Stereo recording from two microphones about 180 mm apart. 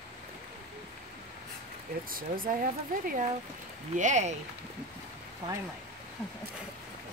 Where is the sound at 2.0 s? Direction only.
50° right (ahead or behind).